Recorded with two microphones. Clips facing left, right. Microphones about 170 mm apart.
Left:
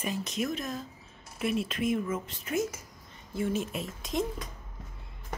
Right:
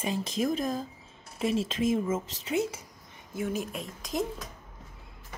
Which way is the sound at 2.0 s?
25° right (ahead or behind).